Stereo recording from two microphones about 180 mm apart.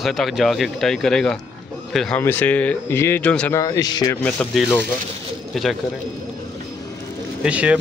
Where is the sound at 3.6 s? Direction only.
20° left (ahead or behind).